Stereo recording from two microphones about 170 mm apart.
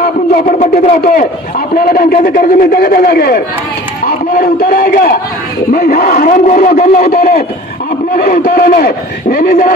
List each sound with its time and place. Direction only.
0.0 s a man's voice: 55° left (ahead or behind)